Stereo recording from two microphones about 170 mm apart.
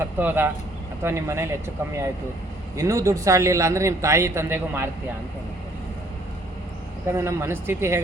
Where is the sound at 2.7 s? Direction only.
20° right (ahead or behind).